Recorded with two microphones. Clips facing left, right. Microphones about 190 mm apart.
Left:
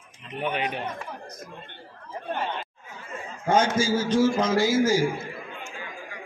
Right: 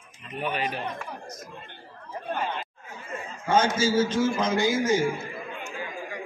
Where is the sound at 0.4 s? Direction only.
20° left (ahead or behind).